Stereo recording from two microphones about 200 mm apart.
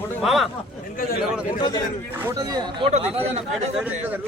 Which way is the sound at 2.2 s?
15° right (ahead or behind).